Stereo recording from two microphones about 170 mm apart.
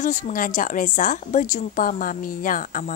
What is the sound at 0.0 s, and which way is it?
Speech, 45° left (ahead or behind).